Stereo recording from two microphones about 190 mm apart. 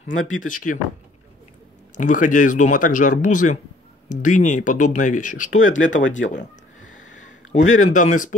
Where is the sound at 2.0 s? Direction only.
40° left (ahead or behind).